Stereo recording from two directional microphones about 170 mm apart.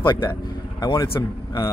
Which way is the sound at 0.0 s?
25° left (ahead or behind).